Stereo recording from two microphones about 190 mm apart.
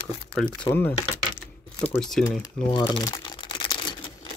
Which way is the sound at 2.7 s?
20° left (ahead or behind).